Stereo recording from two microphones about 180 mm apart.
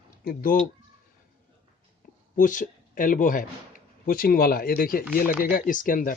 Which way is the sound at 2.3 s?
45° left (ahead or behind).